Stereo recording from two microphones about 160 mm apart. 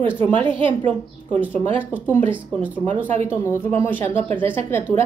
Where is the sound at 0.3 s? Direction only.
35° right (ahead or behind).